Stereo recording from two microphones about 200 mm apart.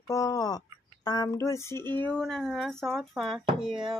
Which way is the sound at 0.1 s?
15° left (ahead or behind).